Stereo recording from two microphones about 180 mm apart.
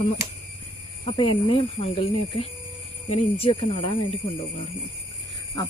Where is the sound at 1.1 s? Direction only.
30° left (ahead or behind).